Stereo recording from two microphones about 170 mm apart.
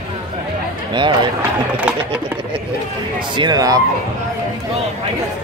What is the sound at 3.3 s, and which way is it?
Speech, 25° right (ahead or behind).